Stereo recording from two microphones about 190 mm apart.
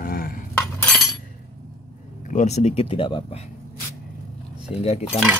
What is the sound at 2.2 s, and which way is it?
Speech, 40° left (ahead or behind).